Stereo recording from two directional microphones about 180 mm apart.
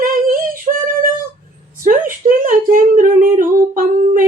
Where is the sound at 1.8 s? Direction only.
50° right (ahead or behind).